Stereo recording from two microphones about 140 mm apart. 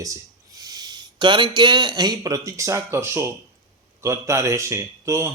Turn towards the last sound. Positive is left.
turn(degrees=-20)  # may be behind; listen again after turning